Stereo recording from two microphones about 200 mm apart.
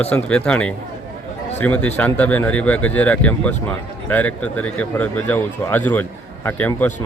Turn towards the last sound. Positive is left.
turn(degrees=10)  # may be behind; listen again after turning